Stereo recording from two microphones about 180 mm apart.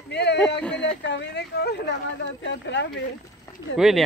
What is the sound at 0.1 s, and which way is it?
Speech, 70° left (ahead or behind).